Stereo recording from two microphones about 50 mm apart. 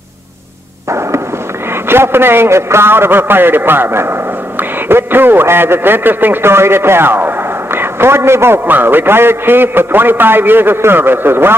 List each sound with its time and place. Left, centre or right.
0.8 s fireworks: right
1.7 s a man's voice: right
8.6 s a man's voice: right